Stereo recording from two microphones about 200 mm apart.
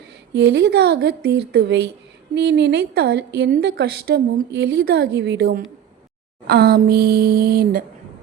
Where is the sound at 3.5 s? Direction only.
45° right (ahead or behind).